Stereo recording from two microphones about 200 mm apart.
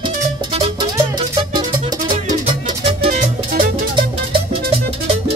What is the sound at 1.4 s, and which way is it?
Music, 25° right (ahead or behind).